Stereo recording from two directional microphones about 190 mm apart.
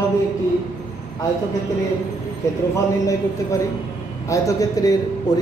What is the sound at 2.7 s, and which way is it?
A man's voice, 15° left (ahead or behind).